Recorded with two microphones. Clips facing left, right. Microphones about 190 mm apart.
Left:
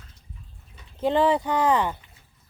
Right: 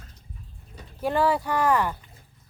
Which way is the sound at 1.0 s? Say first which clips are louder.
Left 2 dB; 20° left (ahead or behind).